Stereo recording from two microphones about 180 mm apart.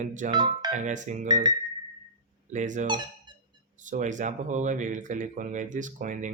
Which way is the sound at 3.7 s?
45° right (ahead or behind).